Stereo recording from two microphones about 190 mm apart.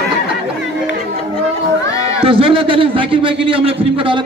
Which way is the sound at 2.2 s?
30° right (ahead or behind).